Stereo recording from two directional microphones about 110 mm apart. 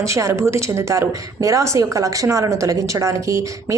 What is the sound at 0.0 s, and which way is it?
A woman's voice, 25° right (ahead or behind).